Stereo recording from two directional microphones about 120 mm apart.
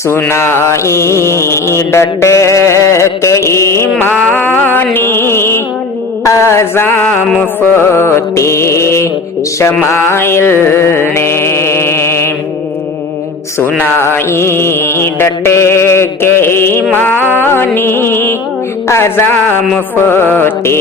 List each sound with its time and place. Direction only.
0.1 s mantra: 20° left (ahead or behind)
13.6 s mantra: 20° left (ahead or behind)
16.9 s music: 15° left (ahead or behind)
18.9 s mantra: 20° left (ahead or behind)